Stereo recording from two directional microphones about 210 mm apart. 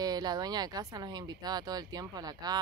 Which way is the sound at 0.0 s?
20° right (ahead or behind).